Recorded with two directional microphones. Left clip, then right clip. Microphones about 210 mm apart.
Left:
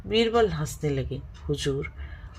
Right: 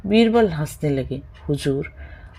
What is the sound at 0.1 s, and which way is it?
Speech, 40° right (ahead or behind).